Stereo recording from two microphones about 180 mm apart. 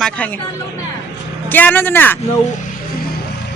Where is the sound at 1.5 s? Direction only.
10° left (ahead or behind).